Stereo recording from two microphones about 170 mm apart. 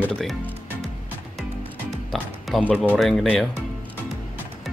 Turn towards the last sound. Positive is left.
turn(degrees=0)  # may be behind; listen again after turning